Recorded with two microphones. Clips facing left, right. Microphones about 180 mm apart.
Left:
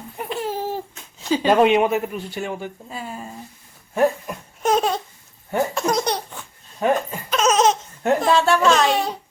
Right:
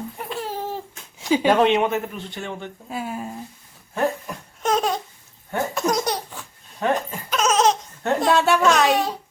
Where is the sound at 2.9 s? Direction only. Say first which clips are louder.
Right 3 dB; 5° right (ahead or behind).